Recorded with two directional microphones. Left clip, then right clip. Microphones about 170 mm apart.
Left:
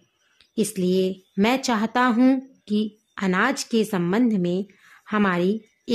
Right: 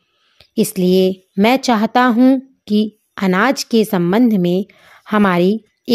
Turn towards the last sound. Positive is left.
turn(degrees=-45)  # may be behind; listen again after turning